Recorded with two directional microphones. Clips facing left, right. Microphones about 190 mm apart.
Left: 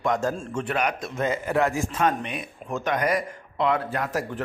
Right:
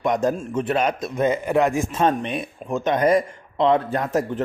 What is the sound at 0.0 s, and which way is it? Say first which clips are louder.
Speech: right 4 dB; 20° right (ahead or behind).